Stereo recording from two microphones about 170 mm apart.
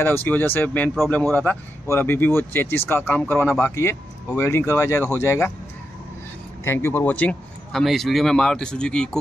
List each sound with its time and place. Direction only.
0.0 s speech: 10° left (ahead or behind)
6.6 s speech: 15° left (ahead or behind)